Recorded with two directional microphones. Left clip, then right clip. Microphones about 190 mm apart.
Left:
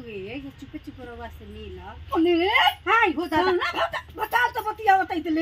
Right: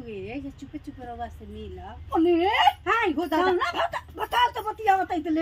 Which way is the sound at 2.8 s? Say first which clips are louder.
Left 3 dB; 20° right (ahead or behind).